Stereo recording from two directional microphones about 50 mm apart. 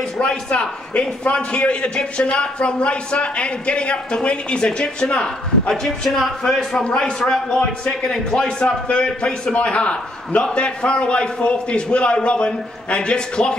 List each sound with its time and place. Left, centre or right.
0.2 s a man's voice: centre
5.7 s a man's voice: centre